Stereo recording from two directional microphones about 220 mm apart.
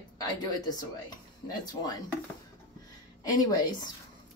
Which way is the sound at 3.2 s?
15° left (ahead or behind).